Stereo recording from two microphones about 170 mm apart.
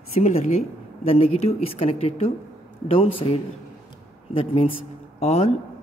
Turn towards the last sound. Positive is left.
turn(degrees=40)  # may be behind; listen again after turning